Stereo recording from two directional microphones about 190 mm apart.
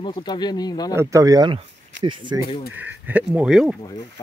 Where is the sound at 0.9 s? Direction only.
15° right (ahead or behind).